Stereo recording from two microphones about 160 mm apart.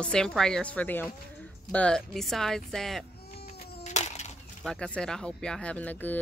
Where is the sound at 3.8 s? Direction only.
45° left (ahead or behind).